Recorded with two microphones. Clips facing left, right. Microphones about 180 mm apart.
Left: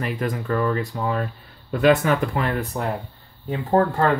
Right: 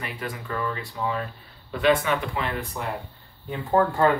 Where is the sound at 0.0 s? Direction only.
45° left (ahead or behind).